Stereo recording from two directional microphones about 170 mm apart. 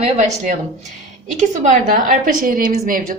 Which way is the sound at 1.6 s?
50° right (ahead or behind).